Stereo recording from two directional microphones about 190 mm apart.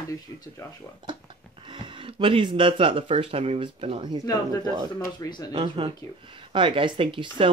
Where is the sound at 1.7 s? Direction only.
25° right (ahead or behind).